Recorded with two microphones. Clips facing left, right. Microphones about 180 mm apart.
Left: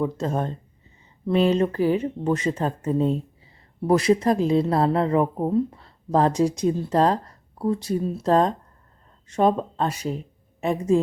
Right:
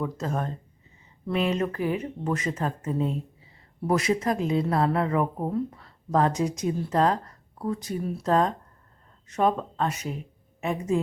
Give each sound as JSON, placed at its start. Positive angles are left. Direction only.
{"t": 0.0, "sound": "speech", "side_deg": 30}